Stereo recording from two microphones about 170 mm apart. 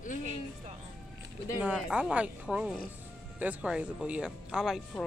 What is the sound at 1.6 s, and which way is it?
Speech, 5° right (ahead or behind).